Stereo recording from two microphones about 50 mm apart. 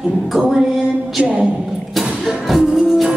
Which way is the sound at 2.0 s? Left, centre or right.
Centre.